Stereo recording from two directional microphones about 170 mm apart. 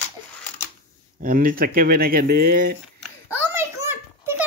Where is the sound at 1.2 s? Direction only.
55° right (ahead or behind).